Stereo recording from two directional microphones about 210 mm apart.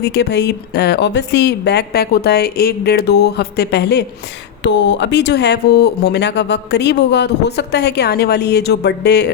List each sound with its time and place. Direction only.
0.0 s speech: 55° left (ahead or behind)